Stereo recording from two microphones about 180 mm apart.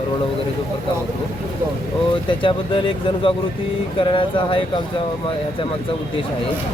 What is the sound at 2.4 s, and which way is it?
Speech, 25° left (ahead or behind).